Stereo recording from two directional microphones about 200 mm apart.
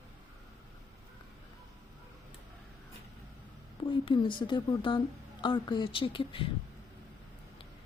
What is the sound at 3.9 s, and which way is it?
A woman's voice, 25° left (ahead or behind).